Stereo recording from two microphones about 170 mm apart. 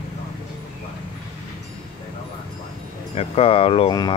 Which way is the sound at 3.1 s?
35° left (ahead or behind).